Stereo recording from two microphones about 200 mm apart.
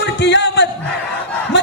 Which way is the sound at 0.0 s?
60° left (ahead or behind).